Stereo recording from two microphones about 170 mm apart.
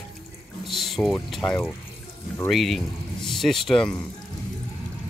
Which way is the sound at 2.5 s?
Centre (ahead or behind).